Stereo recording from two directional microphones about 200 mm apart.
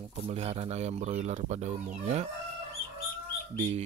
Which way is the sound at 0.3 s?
30° right (ahead or behind).